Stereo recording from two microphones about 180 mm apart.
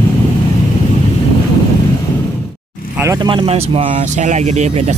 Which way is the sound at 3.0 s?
15° right (ahead or behind).